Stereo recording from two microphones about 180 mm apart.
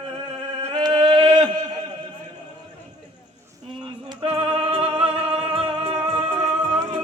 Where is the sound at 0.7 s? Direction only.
25° right (ahead or behind).